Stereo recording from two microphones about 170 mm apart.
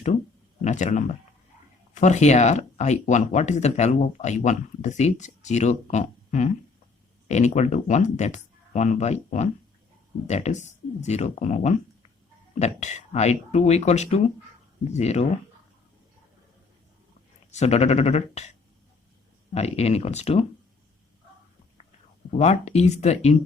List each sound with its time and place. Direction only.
0.6 s speech: 45° left (ahead or behind)
17.5 s speech: 40° left (ahead or behind)
19.5 s speech: 40° left (ahead or behind)
22.4 s speech: 40° left (ahead or behind)